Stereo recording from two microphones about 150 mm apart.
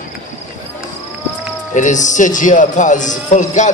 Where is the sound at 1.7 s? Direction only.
55° left (ahead or behind).